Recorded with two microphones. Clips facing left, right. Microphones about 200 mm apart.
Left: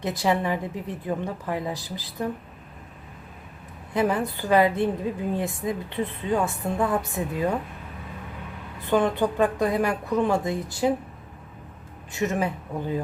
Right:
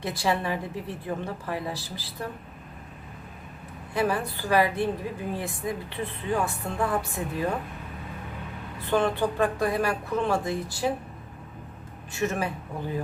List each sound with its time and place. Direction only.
0.0 s a woman's voice: 20° left (ahead or behind)
3.9 s a woman's voice: 20° left (ahead or behind)
8.9 s a woman's voice: 20° left (ahead or behind)
12.1 s a woman's voice: 20° left (ahead or behind)